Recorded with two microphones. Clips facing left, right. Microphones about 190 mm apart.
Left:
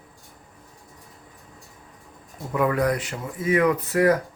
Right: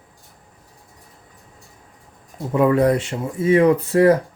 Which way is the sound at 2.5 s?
30° right (ahead or behind).